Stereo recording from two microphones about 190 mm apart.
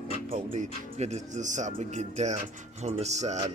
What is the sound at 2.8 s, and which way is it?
Speech, 35° right (ahead or behind).